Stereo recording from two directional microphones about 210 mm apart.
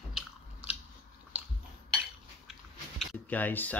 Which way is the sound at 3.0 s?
5° left (ahead or behind).